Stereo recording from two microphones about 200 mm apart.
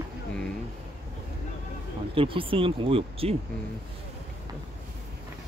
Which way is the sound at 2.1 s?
25° right (ahead or behind).